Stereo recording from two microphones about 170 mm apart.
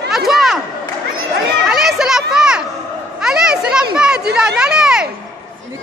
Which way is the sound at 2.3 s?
5° right (ahead or behind).